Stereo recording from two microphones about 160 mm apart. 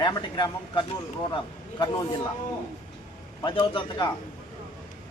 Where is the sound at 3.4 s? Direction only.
30° left (ahead or behind).